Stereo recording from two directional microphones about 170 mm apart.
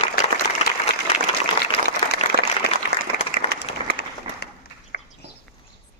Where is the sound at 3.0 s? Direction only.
65° right (ahead or behind).